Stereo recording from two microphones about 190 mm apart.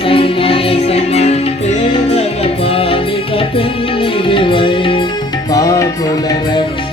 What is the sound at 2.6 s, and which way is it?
Music, 30° left (ahead or behind).